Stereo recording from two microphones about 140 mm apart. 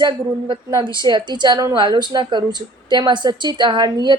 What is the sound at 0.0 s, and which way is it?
A woman's voice, 35° right (ahead or behind).